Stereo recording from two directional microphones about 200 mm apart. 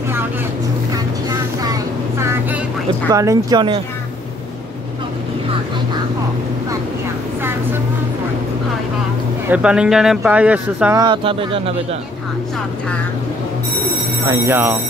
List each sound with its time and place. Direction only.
1.6 s vehicle: 15° right (ahead or behind)
3.1 s speech: 15° right (ahead or behind)
9.5 s speech: 5° right (ahead or behind)
11.0 s speech: 25° right (ahead or behind)
14.3 s speech: 15° right (ahead or behind)